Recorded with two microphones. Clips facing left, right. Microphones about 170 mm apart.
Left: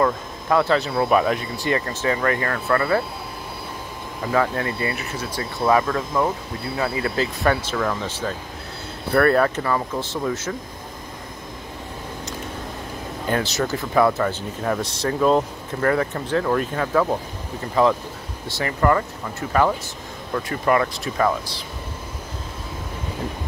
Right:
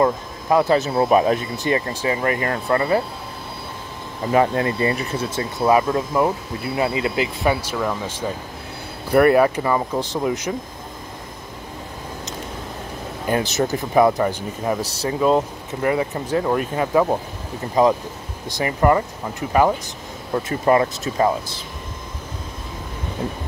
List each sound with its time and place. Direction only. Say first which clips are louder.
0.0 s speech: right 2 dB; 20° right (ahead or behind)
4.3 s speech: right 4 dB; 25° right (ahead or behind)
5.6 s speech: right 2 dB; 15° right (ahead or behind)
13.3 s speech: right 3 dB; 20° right (ahead or behind)
18.5 s speech: right 2 dB; 15° right (ahead or behind)
20.3 s speech: right 3 dB; 25° right (ahead or behind)